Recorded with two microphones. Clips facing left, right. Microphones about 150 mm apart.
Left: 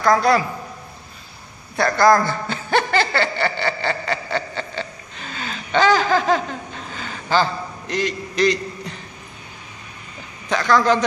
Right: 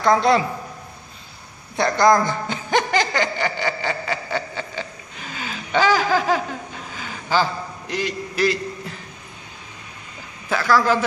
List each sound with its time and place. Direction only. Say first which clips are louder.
0.0 s a woman's voice: even; 25° right (ahead or behind)
1.8 s chuckle: left 1 dB; 20° right (ahead or behind)
10.5 s a man's voice: left 1 dB; 5° right (ahead or behind)